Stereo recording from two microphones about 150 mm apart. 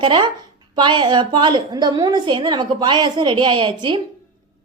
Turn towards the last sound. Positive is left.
turn(degrees=-30)  # may be behind; listen again after turning